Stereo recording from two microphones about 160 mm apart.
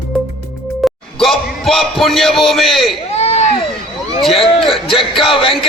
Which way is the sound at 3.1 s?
40° left (ahead or behind).